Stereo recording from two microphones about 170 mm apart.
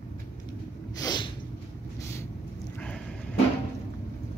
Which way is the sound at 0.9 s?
25° left (ahead or behind).